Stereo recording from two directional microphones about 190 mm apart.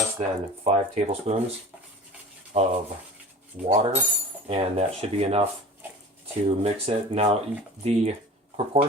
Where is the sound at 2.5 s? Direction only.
35° right (ahead or behind).